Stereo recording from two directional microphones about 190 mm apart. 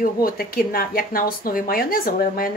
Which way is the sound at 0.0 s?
50° left (ahead or behind).